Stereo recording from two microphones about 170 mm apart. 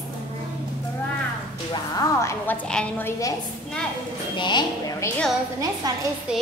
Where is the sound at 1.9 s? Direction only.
15° left (ahead or behind).